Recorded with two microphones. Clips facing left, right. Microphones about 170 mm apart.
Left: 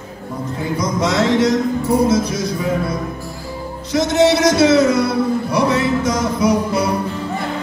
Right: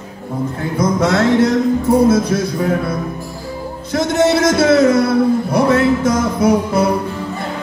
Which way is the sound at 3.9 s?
55° right (ahead or behind).